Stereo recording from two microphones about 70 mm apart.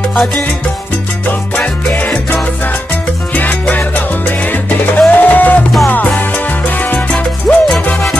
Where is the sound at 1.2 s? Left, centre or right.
Left.